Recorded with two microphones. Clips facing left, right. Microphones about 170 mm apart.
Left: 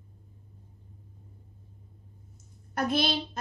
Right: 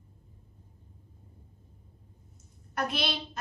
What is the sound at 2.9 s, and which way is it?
Speech, 40° left (ahead or behind).